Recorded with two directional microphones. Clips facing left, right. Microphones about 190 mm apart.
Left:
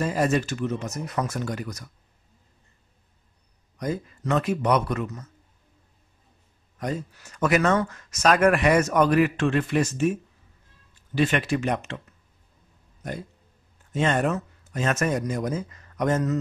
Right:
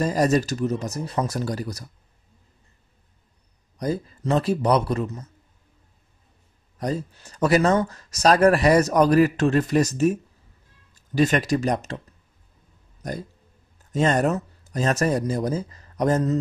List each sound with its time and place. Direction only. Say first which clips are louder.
0.0 s speech: right 3 dB; 40° right (ahead or behind)
3.7 s speech: right 3 dB; 35° right (ahead or behind)
6.8 s speech: right 3 dB; 35° right (ahead or behind)
13.0 s speech: right 2 dB; 40° right (ahead or behind)